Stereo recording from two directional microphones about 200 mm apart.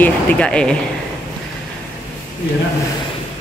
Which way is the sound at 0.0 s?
5° left (ahead or behind).